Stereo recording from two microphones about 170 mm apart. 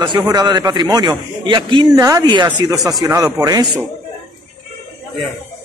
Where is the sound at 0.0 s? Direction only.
25° right (ahead or behind).